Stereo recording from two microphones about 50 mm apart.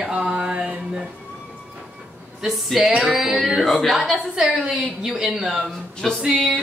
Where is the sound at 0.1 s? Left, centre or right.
Right.